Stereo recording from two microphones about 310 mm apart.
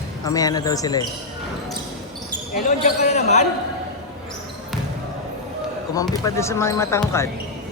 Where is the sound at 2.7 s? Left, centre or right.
Left.